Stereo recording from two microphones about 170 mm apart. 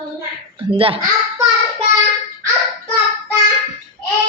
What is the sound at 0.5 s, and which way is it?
Speech, 30° right (ahead or behind).